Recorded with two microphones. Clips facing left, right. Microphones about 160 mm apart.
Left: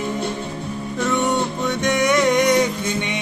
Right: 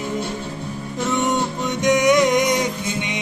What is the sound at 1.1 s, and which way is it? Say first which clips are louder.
Music: even; 20° right (ahead or behind).